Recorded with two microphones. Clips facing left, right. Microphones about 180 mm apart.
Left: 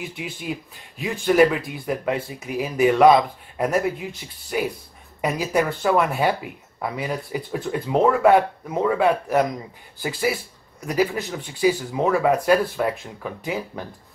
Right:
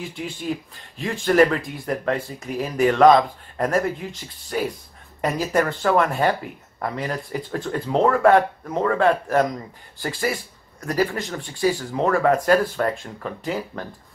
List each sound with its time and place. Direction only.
0.1 s speech: 5° left (ahead or behind)